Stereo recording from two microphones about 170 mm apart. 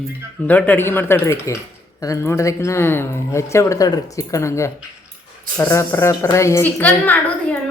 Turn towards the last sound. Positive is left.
turn(degrees=10)  # may be behind; listen again after turning